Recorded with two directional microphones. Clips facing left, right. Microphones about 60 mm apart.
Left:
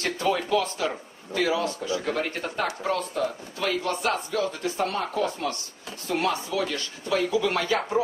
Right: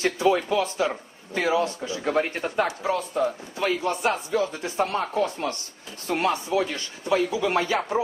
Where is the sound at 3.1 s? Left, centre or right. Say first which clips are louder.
Right 3 dB; right.